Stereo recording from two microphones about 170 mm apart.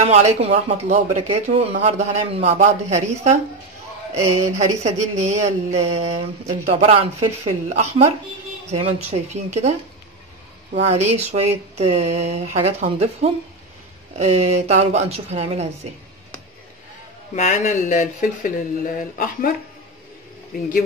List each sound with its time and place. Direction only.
0.0 s speech: 40° right (ahead or behind)
10.8 s speech: 40° right (ahead or behind)
17.4 s speech: 45° left (ahead or behind)